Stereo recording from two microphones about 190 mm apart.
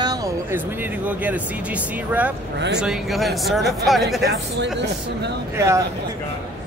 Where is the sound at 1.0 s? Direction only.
10° right (ahead or behind).